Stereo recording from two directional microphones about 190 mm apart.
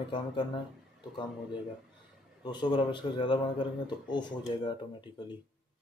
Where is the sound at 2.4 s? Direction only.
25° left (ahead or behind).